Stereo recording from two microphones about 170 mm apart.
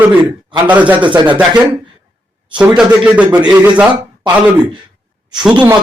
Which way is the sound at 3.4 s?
20° right (ahead or behind).